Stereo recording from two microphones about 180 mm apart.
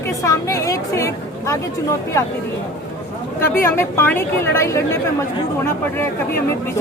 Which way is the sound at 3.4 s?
15° left (ahead or behind).